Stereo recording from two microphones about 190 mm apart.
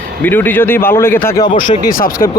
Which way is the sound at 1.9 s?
50° left (ahead or behind).